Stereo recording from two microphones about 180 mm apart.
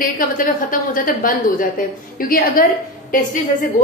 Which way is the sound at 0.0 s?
50° left (ahead or behind).